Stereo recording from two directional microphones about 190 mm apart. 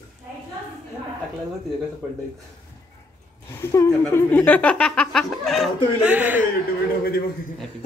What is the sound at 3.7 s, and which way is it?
Speech, 15° left (ahead or behind).